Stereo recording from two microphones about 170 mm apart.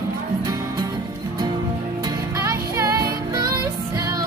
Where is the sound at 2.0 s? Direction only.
20° right (ahead or behind).